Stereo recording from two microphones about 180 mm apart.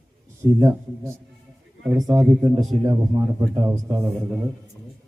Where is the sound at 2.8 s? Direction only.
20° right (ahead or behind).